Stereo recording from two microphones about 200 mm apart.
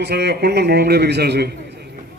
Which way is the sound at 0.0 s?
55° right (ahead or behind).